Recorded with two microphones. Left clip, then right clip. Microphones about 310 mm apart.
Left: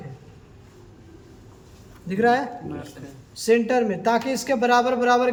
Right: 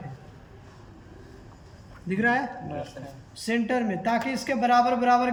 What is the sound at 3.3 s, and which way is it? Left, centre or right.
Speech, centre.